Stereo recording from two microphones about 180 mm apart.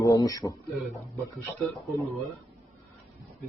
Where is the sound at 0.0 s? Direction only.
20° left (ahead or behind).